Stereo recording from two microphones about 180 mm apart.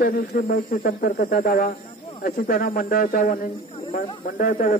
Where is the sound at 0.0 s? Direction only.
55° left (ahead or behind).